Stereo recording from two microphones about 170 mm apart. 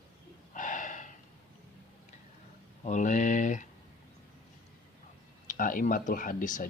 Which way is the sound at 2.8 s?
45° left (ahead or behind).